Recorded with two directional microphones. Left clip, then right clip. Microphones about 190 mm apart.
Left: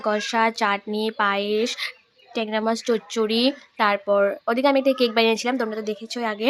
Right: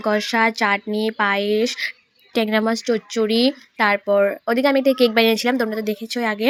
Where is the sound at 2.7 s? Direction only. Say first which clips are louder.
Right 2 dB; 5° right (ahead or behind).